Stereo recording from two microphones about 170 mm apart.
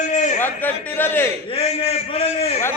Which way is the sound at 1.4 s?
35° left (ahead or behind).